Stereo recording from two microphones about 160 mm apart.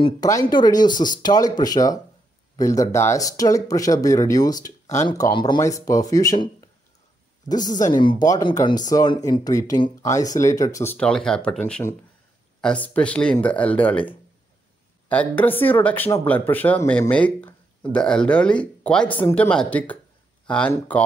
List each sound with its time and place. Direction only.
0.0 s speech: 20° left (ahead or behind)
7.4 s speech: 25° left (ahead or behind)
11.0 s speech: 5° left (ahead or behind)
12.8 s speech: 10° left (ahead or behind)